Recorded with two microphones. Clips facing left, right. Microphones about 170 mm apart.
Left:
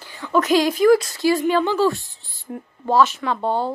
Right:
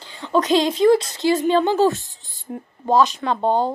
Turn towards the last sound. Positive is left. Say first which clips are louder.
# right 3 dB
turn(degrees=-20)  # may be behind; listen again after turning